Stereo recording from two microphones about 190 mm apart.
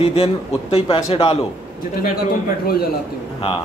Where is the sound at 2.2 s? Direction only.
55° left (ahead or behind).